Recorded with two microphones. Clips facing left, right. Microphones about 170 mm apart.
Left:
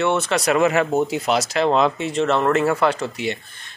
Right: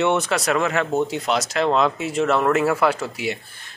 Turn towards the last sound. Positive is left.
turn(degrees=-5)  # may be behind; listen again after turning